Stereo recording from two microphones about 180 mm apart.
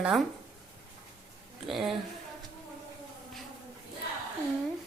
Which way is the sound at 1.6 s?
Centre (ahead or behind).